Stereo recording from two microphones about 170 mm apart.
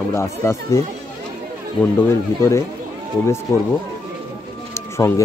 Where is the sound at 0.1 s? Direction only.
15° left (ahead or behind).